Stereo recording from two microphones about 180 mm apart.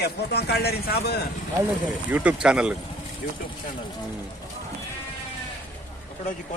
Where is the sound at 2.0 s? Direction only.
10° right (ahead or behind).